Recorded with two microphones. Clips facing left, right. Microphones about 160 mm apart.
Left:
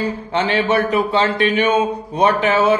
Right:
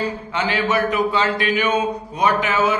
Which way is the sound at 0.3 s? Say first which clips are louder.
Left 4 dB; 30° left (ahead or behind).